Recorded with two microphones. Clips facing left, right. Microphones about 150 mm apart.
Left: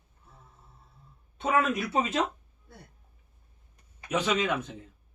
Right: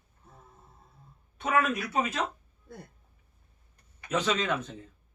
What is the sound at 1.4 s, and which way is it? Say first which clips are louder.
Speech: left 1 dB; 25° left (ahead or behind).